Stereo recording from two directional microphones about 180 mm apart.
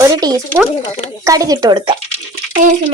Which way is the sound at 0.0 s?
20° right (ahead or behind).